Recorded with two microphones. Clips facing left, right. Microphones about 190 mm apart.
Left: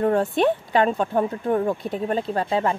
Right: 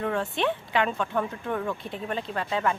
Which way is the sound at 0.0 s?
40° left (ahead or behind).